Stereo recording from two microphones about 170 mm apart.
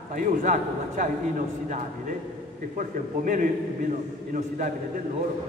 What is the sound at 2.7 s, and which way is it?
A man's voice, 50° right (ahead or behind).